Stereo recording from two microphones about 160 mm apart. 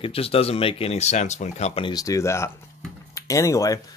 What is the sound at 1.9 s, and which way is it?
Speech, 20° left (ahead or behind).